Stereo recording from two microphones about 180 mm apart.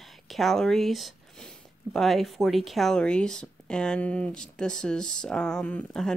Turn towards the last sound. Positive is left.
turn(degrees=5)  # may be behind; listen again after turning